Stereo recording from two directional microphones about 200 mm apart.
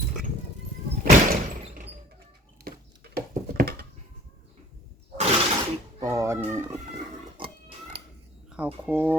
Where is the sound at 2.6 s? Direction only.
50° right (ahead or behind).